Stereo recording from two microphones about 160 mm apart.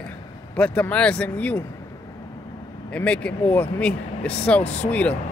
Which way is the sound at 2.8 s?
5° left (ahead or behind).